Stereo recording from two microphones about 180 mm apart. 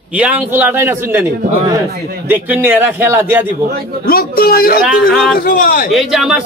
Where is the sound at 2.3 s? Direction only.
10° right (ahead or behind).